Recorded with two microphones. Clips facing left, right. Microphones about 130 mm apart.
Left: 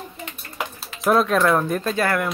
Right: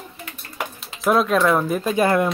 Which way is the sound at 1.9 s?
20° right (ahead or behind).